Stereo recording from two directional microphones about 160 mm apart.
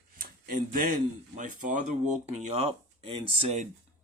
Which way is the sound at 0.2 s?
65° right (ahead or behind).